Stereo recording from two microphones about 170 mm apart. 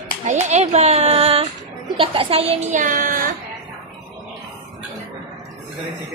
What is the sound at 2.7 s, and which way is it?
Child singing, 50° right (ahead or behind).